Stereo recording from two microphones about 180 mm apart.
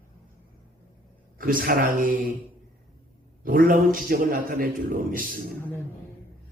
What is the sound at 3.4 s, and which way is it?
A man's voice, 50° right (ahead or behind).